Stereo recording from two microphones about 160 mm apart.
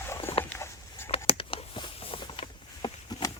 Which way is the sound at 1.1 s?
35° left (ahead or behind).